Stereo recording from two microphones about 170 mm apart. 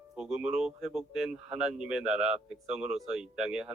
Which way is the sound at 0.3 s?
5° right (ahead or behind).